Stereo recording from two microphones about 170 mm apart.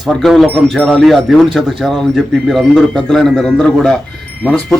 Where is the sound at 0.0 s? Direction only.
Centre (ahead or behind).